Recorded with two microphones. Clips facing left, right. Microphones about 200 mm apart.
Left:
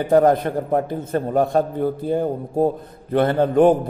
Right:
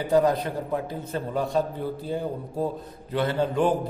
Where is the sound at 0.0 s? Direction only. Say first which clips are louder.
Left 6 dB; 55° left (ahead or behind).